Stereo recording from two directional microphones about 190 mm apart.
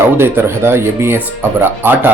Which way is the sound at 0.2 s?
15° right (ahead or behind).